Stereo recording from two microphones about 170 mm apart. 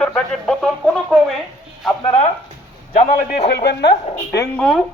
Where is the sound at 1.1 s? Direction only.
5° right (ahead or behind).